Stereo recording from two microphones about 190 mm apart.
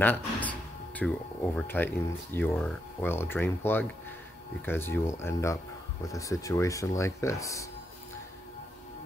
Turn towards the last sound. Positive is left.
turn(degrees=15)  # may be behind; listen again after turning